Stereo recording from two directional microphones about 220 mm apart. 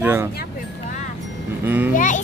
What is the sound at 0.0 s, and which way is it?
Speech, 10° right (ahead or behind).